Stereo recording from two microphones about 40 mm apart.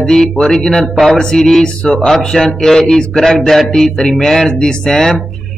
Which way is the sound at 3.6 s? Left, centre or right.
Centre.